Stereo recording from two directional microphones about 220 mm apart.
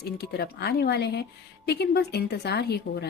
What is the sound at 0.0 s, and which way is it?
Speech, 45° left (ahead or behind).